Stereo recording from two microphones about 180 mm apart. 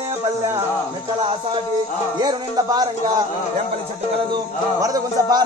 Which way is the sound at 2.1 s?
20° right (ahead or behind).